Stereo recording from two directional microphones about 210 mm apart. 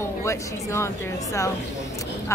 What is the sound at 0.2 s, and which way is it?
A woman's voice, 15° left (ahead or behind).